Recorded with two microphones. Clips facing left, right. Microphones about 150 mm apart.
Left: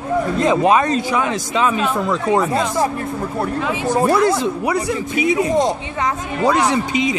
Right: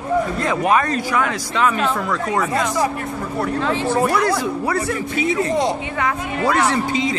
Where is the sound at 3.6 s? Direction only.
10° left (ahead or behind).